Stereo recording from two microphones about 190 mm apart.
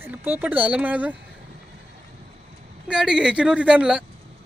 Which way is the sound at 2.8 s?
5° right (ahead or behind).